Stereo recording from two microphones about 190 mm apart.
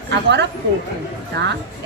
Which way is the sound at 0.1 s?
65° right (ahead or behind).